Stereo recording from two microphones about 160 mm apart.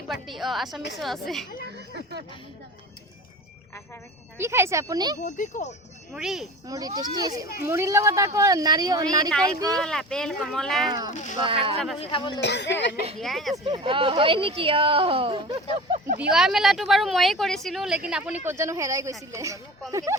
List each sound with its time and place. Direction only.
0.1 s speech: centre (ahead or behind)
2.0 s a sound: 90° right
4.4 s speech: 15° right (ahead or behind)
5.2 s speech: 50° left (ahead or behind)
6.1 s speech: centre (ahead or behind)
6.7 s speech: 25° right (ahead or behind)
9.8 s speech: 5° left (ahead or behind)
11.1 s speech: 50° left (ahead or behind)
11.3 s speech: 35° right (ahead or behind)
11.9 s speech: 30° left (ahead or behind)
12.4 s speech: 90° left
13.1 s speech: centre (ahead or behind)
13.7 s speech: 35° right (ahead or behind)
16.2 s speech: 5° right (ahead or behind); by 20.1 s 20° right (ahead or behind)